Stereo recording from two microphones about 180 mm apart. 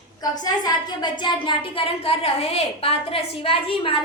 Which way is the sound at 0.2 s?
20° left (ahead or behind).